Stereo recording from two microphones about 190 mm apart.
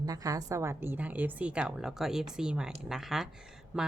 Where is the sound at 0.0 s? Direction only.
20° right (ahead or behind).